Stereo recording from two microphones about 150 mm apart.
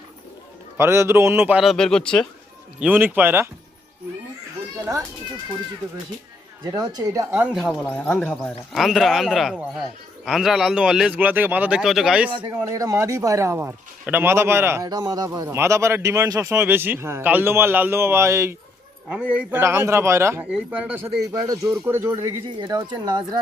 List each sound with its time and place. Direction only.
0.8 s a man's voice: 15° right (ahead or behind)
1.7 s speech: 5° left (ahead or behind)
2.8 s a man's voice: 10° right (ahead or behind)
6.7 s a man's voice: 25° right (ahead or behind)
7.5 s speech: centre (ahead or behind)
12.5 s a man's voice: 25° right (ahead or behind)
14.8 s a man's voice: 25° right (ahead or behind)
19.0 s a man's voice: 10° right (ahead or behind)
22.4 s a man's voice: 30° right (ahead or behind)